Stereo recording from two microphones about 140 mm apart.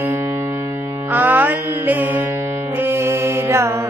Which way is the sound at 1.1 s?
15° right (ahead or behind).